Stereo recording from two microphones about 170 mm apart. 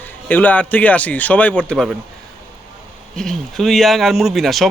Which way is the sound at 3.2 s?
Centre (ahead or behind).